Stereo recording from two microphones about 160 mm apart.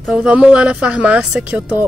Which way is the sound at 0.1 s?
5° right (ahead or behind).